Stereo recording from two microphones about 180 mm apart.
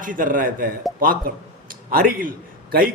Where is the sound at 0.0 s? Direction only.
50° right (ahead or behind).